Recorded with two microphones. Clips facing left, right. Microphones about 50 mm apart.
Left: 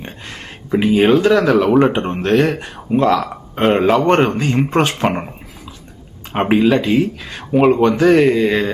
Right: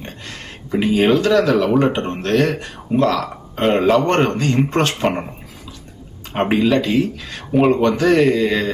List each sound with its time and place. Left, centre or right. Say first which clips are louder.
0.0 s a sound: left 1 dB; centre
1.0 s speech: left 2 dB; centre
3.6 s speech: left 1 dB; centre
6.3 s speech: left 2 dB; centre
7.5 s speech: left 2 dB; centre